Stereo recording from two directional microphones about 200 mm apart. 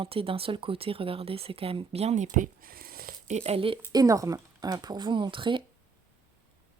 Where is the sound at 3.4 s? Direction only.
30° right (ahead or behind).